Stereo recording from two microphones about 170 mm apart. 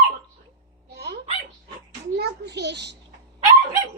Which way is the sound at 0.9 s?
75° right (ahead or behind).